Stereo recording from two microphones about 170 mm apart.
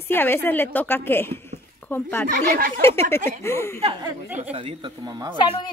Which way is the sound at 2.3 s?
55° right (ahead or behind).